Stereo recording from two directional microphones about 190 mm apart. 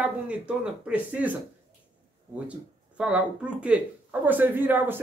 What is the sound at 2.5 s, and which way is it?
Speech, 5° right (ahead or behind).